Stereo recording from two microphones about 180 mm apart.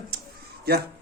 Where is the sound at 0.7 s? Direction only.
60° right (ahead or behind).